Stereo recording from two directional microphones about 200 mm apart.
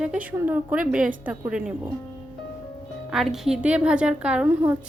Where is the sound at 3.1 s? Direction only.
Centre (ahead or behind).